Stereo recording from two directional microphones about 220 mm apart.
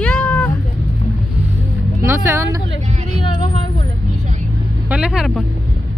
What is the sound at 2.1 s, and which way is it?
Speech, 10° right (ahead or behind).